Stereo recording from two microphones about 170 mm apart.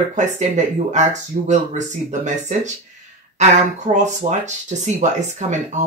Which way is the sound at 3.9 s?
45° right (ahead or behind).